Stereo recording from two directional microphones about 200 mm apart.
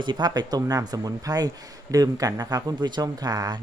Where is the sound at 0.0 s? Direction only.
20° right (ahead or behind).